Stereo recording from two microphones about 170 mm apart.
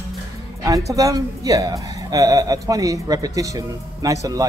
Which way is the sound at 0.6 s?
20° right (ahead or behind).